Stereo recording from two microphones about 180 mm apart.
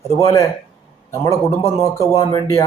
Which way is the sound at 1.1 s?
15° left (ahead or behind).